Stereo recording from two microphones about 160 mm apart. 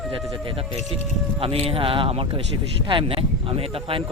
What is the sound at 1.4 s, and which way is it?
Speech, 35° right (ahead or behind).